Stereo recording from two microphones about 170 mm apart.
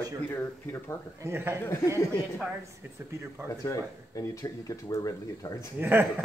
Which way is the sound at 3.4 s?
20° left (ahead or behind).